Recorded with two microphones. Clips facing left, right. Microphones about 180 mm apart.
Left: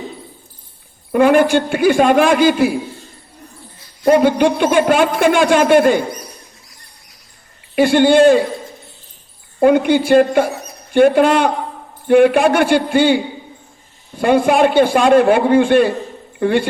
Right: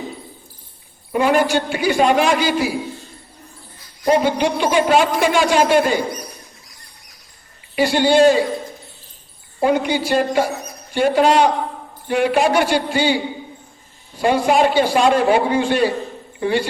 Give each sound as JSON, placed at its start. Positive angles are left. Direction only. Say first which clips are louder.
{"t": 1.1, "sound": "speech", "louder": "left 5 dB", "side_deg": 55}
{"t": 4.0, "sound": "speech", "louder": "left 5 dB", "side_deg": 55}
{"t": 7.8, "sound": "speech", "louder": "left 4 dB", "side_deg": 55}
{"t": 9.6, "sound": "a woman's voice", "louder": "left 6 dB", "side_deg": 55}